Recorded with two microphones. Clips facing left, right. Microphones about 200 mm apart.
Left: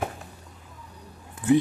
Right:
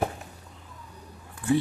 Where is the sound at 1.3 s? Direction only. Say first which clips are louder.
Left 4 dB; 20° left (ahead or behind).